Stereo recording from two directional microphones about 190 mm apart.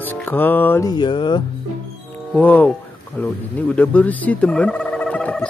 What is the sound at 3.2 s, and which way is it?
Turkey, 10° left (ahead or behind).